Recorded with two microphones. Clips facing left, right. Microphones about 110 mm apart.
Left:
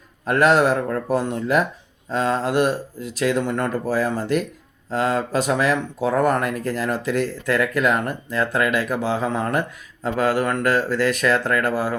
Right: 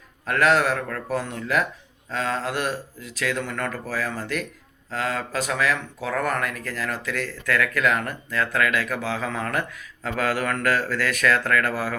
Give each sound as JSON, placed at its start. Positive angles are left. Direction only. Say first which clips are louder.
{"t": 0.3, "sound": "speech", "louder": "left 4 dB", "side_deg": 20}